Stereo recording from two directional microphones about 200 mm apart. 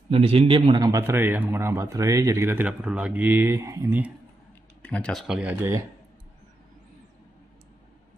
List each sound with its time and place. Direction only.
0.1 s a man's voice: 30° right (ahead or behind); by 4.1 s 15° right (ahead or behind)
4.8 s speech: 5° left (ahead or behind); by 5.9 s 10° right (ahead or behind)